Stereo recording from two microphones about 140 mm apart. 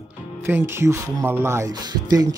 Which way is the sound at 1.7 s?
30° right (ahead or behind).